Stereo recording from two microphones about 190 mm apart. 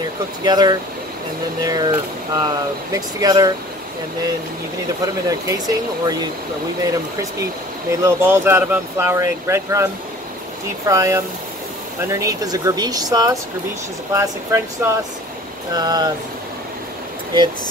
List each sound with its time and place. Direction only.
0.5 s speech: 20° right (ahead or behind)
5.0 s speech: 20° right (ahead or behind)
6.8 s speech: 15° right (ahead or behind)
10.9 s speech: 15° right (ahead or behind)